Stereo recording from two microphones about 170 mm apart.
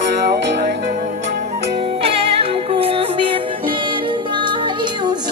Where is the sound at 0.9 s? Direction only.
50° right (ahead or behind).